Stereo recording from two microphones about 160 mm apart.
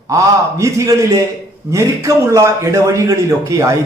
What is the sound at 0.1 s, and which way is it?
A man's voice, 20° right (ahead or behind).